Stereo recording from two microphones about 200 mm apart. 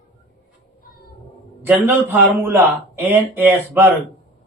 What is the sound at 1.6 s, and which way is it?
Speech, 10° right (ahead or behind).